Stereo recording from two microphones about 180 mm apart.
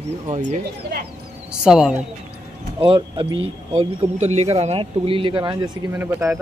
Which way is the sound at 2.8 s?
30° right (ahead or behind).